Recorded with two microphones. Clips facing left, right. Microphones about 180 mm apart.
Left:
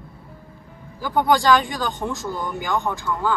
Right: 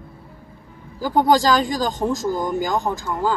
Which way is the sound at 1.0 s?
40° right (ahead or behind).